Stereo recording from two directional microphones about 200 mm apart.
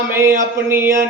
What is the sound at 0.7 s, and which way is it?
Mantra, 10° right (ahead or behind).